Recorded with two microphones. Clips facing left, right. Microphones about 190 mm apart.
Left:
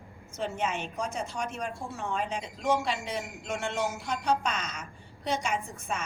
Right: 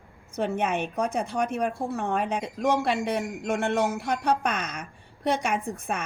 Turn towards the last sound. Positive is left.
turn(degrees=-60)  # may be behind; listen again after turning